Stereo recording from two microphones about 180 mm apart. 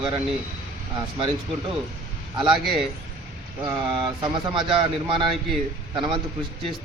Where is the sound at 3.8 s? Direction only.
30° right (ahead or behind).